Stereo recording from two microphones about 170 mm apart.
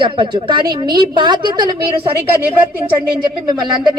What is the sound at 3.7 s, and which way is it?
Speech, 25° right (ahead or behind).